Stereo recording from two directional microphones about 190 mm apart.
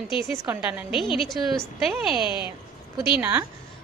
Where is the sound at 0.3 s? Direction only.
10° right (ahead or behind).